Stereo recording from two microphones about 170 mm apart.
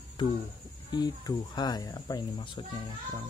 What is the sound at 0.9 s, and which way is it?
Speech, 25° left (ahead or behind).